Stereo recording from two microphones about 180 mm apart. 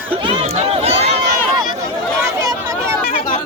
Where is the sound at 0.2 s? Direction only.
30° right (ahead or behind).